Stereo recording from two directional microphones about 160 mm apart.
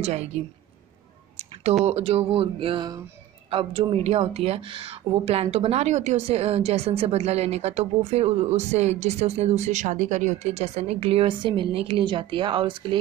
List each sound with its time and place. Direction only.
0.0 s a woman's voice: 45° right (ahead or behind)
1.3 s a sound: 40° right (ahead or behind)
1.9 s speech: 40° right (ahead or behind)